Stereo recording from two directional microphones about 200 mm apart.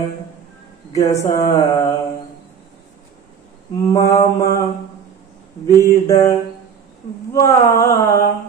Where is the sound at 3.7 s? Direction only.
15° left (ahead or behind).